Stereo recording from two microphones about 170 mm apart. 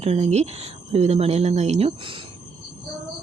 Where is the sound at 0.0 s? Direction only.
35° right (ahead or behind).